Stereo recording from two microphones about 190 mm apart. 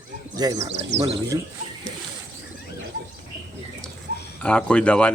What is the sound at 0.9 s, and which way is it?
Speech, 65° right (ahead or behind).